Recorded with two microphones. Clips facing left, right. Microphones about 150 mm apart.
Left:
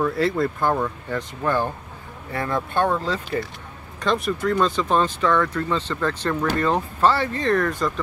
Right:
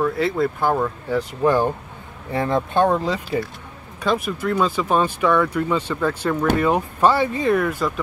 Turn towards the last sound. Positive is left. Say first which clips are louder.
# right 2 dB
turn(degrees=-5)  # may be behind; listen again after turning